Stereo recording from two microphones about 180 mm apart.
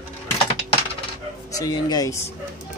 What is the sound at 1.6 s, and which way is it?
Speech, 20° left (ahead or behind).